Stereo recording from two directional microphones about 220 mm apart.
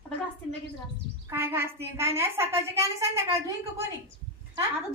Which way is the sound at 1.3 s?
10° right (ahead or behind).